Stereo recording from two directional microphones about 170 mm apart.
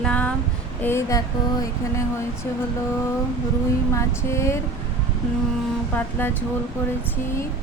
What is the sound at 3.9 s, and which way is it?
Speech, 15° left (ahead or behind).